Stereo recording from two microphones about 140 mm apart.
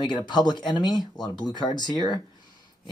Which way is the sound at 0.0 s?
30° left (ahead or behind).